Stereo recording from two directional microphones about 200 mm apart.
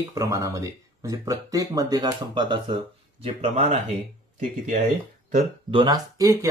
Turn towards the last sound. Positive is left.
turn(degrees=-15)  # may be behind; listen again after turning